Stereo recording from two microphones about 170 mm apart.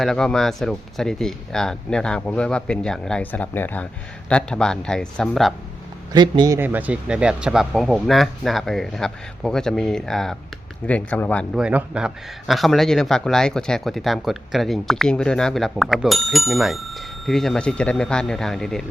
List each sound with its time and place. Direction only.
0.0 s speech: 5° left (ahead or behind)
6.1 s speech: 25° right (ahead or behind)
6.6 s speech: 10° right (ahead or behind); by 11.4 s 10° left (ahead or behind)
11.5 s speech: 5° right (ahead or behind)